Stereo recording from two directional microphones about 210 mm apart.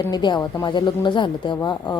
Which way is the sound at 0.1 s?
20° left (ahead or behind).